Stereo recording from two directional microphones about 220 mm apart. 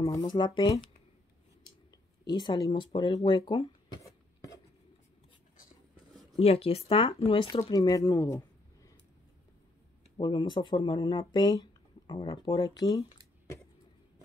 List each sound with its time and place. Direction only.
0.0 s speech: 15° left (ahead or behind)
2.2 s speech: 20° left (ahead or behind)
6.4 s speech: 25° left (ahead or behind)
10.1 s speech: 20° left (ahead or behind)